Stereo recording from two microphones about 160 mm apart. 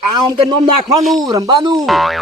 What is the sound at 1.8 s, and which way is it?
Speech, centre (ahead or behind).